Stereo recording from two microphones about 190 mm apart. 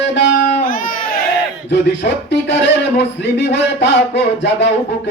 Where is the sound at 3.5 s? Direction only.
65° left (ahead or behind).